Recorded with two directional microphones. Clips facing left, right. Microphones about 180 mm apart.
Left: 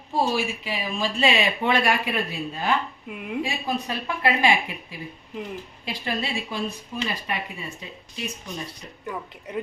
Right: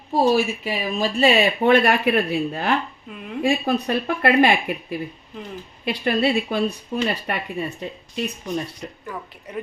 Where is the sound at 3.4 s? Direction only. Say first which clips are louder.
Right 13 dB; 55° right (ahead or behind).